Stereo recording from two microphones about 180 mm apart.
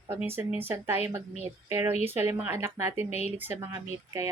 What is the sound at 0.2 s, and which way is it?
Speech, 10° right (ahead or behind).